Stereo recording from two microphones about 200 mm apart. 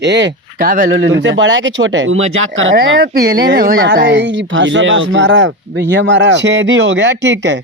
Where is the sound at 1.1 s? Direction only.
65° right (ahead or behind).